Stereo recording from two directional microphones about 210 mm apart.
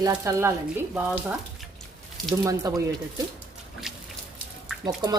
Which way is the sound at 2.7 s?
15° right (ahead or behind).